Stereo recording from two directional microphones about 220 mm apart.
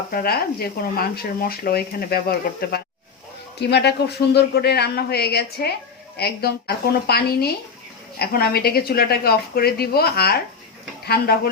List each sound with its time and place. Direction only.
0.1 s speech: 45° left (ahead or behind)